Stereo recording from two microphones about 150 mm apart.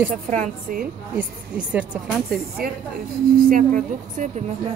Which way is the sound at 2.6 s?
90° right.